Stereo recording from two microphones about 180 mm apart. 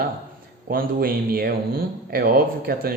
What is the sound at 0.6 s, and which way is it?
Speech, 55° right (ahead or behind).